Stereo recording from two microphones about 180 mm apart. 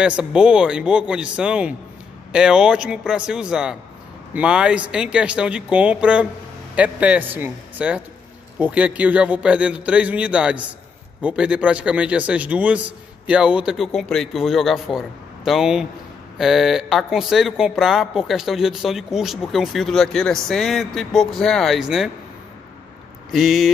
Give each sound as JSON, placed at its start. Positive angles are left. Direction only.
{"t": 0.0, "sound": "a man's voice", "side_deg": -5}
{"t": 23.3, "sound": "speech", "side_deg": 0}